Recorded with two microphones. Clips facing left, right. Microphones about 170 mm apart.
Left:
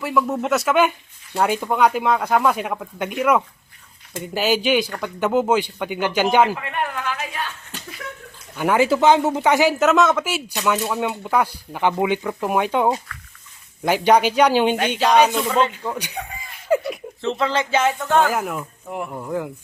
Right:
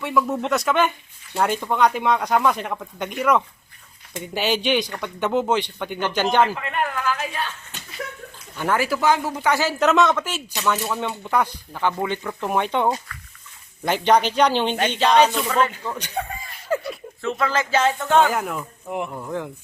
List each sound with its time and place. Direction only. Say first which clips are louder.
0.0 s speech: left 1 dB; centre (ahead or behind)
8.5 s speech: left 3 dB; 10° left (ahead or behind)
8.8 s speech: left 7 dB; 20° left (ahead or behind)
9.8 s speech: left 1 dB; centre (ahead or behind)
16.6 s a sound: left 5 dB; 15° left (ahead or behind)
18.2 s speech: even; 5° left (ahead or behind)
19.0 s speech: left 2 dB; 10° left (ahead or behind)